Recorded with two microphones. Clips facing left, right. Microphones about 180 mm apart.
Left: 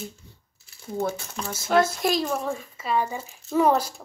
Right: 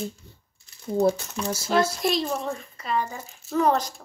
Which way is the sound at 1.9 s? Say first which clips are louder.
Left 1 dB; centre (ahead or behind).